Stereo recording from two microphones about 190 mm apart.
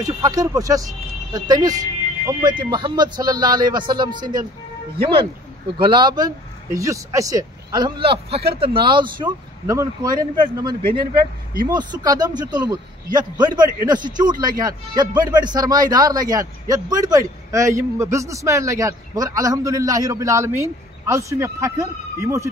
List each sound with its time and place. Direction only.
0.0 s a man's voice: 20° right (ahead or behind)